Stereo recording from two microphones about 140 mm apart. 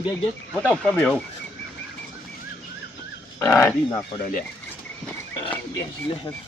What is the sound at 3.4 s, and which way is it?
Speech, 15° left (ahead or behind).